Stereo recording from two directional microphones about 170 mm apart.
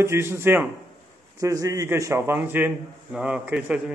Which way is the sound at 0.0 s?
15° right (ahead or behind).